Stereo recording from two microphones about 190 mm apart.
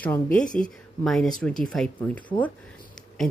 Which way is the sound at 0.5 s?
5° left (ahead or behind).